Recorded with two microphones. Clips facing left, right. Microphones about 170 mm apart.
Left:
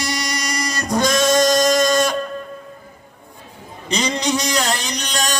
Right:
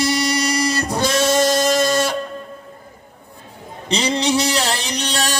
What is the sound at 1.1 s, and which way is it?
Music, 30° right (ahead or behind).